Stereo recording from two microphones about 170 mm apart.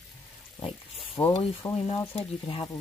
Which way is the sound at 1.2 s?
30° left (ahead or behind).